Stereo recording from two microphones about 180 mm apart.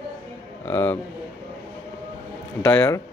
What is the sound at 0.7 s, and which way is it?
Speech, 10° left (ahead or behind).